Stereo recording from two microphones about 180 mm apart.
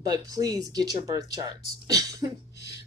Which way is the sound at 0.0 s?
20° right (ahead or behind).